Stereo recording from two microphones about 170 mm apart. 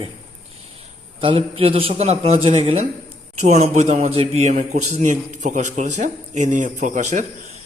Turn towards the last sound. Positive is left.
turn(degrees=-45)  # may be behind; listen again after turning